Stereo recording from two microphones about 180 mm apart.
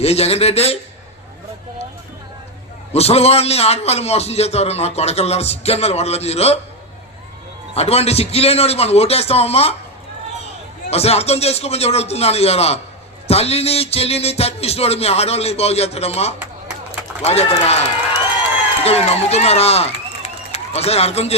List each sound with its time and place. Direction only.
0.0 s a man's voice: 35° left (ahead or behind)
2.9 s a man's voice: 35° left (ahead or behind)
7.7 s a man's voice: 35° left (ahead or behind)
10.8 s a man's voice: 35° left (ahead or behind)
18.9 s speech: 35° left (ahead or behind)